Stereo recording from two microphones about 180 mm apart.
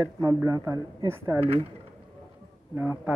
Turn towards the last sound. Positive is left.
turn(degrees=-10)  # may be behind; listen again after turning